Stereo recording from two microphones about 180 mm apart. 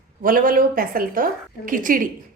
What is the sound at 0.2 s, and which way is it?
A woman's voice, 50° right (ahead or behind).